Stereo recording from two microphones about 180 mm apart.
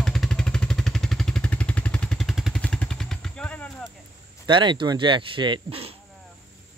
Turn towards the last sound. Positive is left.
turn(degrees=-30)  # may be behind; listen again after turning